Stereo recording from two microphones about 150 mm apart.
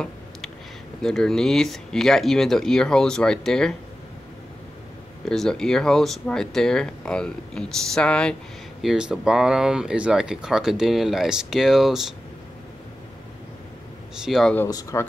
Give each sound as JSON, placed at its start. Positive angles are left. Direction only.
{"t": 1.0, "sound": "speech", "side_deg": 5}
{"t": 5.3, "sound": "speech", "side_deg": 5}
{"t": 8.8, "sound": "speech", "side_deg": -5}
{"t": 14.1, "sound": "speech", "side_deg": -5}
{"t": 14.7, "sound": "speech", "side_deg": 25}